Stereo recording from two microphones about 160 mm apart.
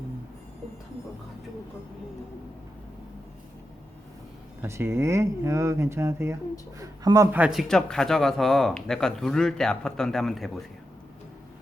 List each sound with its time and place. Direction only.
4.6 s speech: 15° right (ahead or behind)
7.3 s speech: 5° right (ahead or behind)